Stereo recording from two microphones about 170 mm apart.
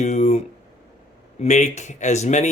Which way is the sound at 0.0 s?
40° left (ahead or behind).